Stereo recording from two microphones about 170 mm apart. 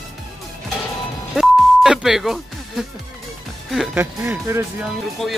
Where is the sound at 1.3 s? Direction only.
5° right (ahead or behind).